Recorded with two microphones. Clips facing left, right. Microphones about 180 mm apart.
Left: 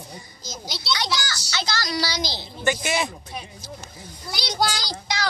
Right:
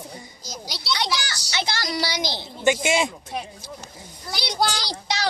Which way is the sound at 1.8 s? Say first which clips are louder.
Even; 25° right (ahead or behind).